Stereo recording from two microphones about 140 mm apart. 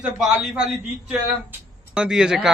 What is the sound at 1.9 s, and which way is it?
Speech, 5° right (ahead or behind).